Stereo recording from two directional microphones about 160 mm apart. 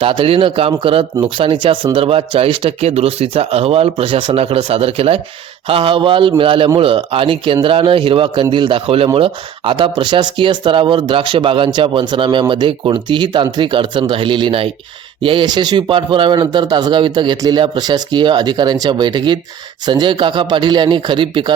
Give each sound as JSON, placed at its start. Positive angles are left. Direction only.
{"t": 0.0, "sound": "a man's voice", "side_deg": -35}